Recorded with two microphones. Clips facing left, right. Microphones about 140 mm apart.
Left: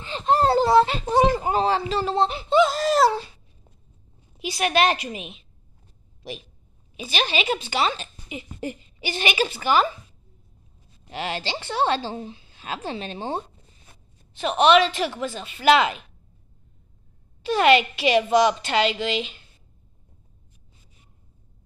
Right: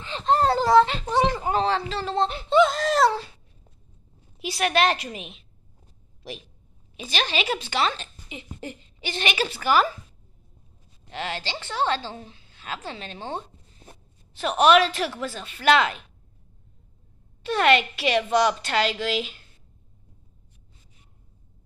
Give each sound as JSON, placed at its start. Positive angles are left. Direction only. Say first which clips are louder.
{"t": 0.1, "sound": "a sound", "louder": "left 1 dB", "side_deg": 10}
{"t": 0.6, "sound": "a child's voice", "louder": "even", "side_deg": 5}
{"t": 4.4, "sound": "a woman's voice", "louder": "left 1 dB", "side_deg": 0}
{"t": 7.0, "sound": "a woman's voice", "louder": "left 2 dB", "side_deg": 5}
{"t": 11.1, "sound": "a woman's voice", "louder": "left 3 dB", "side_deg": 15}
{"t": 14.3, "sound": "a woman's voice", "louder": "left 1 dB", "side_deg": 0}
{"t": 17.4, "sound": "a woman's voice", "louder": "left 3 dB", "side_deg": 5}